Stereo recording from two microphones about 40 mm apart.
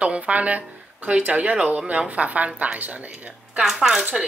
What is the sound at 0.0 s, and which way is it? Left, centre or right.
Speech, right.